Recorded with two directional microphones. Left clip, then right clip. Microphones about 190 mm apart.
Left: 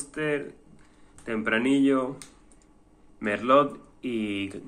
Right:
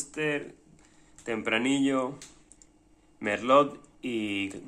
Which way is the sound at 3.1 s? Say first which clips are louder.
Left 1 dB; 25° right (ahead or behind).